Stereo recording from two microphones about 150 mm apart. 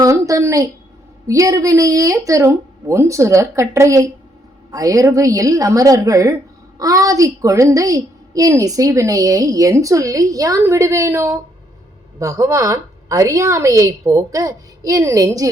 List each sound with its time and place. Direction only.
0.0 s a woman's voice: 20° right (ahead or behind)